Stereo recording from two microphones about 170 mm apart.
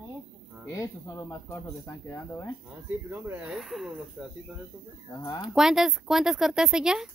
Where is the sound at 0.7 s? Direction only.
20° left (ahead or behind).